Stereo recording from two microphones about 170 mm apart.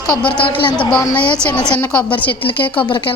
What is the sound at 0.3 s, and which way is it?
Speech, 30° left (ahead or behind).